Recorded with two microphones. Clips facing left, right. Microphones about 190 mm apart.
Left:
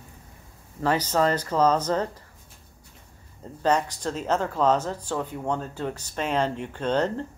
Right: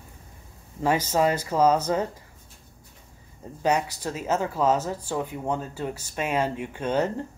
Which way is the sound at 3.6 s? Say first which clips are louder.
Left 1 dB; 10° right (ahead or behind).